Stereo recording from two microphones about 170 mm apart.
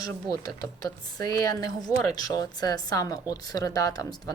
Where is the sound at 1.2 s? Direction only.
20° left (ahead or behind).